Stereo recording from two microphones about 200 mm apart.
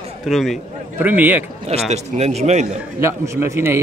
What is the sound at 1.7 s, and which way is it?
A man's voice, 30° right (ahead or behind).